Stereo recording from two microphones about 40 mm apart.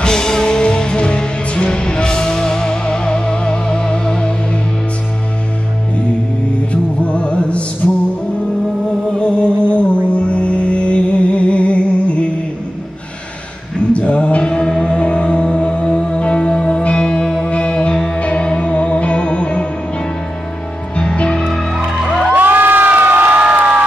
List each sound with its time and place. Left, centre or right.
0.0 s music: centre
6.7 s music: left
9.2 s music: left
13.7 s music: left
20.9 s music: left
22.3 s crowd: right